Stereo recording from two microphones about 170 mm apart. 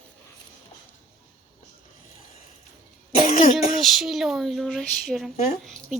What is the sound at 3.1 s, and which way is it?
Cough, 40° left (ahead or behind).